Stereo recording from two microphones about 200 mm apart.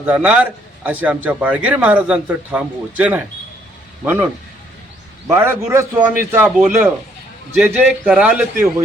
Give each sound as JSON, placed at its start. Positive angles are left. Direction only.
{"t": 0.0, "sound": "a man's voice", "side_deg": -10}
{"t": 5.3, "sound": "a man's voice", "side_deg": -10}